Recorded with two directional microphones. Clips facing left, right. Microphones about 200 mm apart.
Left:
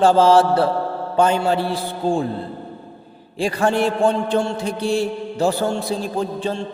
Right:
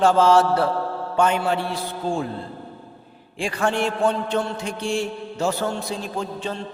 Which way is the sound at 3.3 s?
35° left (ahead or behind).